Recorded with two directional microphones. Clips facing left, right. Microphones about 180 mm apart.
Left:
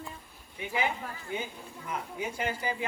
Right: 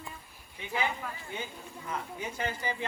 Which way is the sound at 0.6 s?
15° left (ahead or behind).